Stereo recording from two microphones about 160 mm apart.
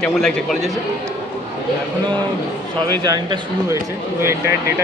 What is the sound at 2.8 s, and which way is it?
Speech, 25° right (ahead or behind).